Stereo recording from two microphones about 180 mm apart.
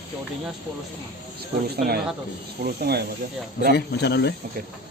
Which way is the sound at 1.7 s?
60° right (ahead or behind).